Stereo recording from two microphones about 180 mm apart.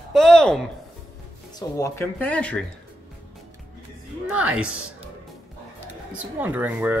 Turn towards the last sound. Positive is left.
turn(degrees=-10)  # may be behind; listen again after turning